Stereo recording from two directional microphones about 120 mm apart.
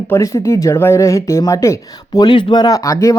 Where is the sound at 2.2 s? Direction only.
40° left (ahead or behind).